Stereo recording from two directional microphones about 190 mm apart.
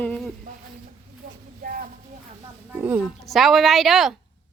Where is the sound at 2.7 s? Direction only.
10° right (ahead or behind).